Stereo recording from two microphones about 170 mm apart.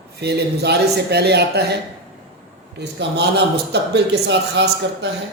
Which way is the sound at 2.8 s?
75° right (ahead or behind).